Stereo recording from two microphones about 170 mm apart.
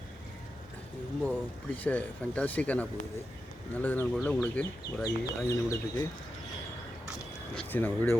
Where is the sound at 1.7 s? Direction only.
10° left (ahead or behind).